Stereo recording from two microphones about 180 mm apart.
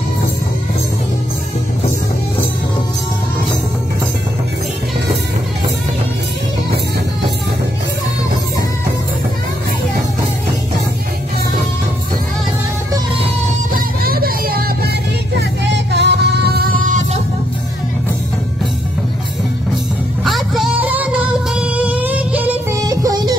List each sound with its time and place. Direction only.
13.7 s music: 55° right (ahead or behind)
15.3 s music: 70° right (ahead or behind); by 17.2 s 45° right (ahead or behind)
20.2 s music: centre (ahead or behind); by 23.3 s 20° right (ahead or behind)